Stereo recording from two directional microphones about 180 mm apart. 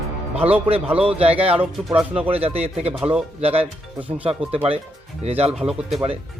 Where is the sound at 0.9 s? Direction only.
35° right (ahead or behind).